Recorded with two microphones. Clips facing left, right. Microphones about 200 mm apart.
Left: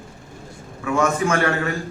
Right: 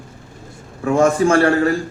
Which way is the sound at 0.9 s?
30° right (ahead or behind).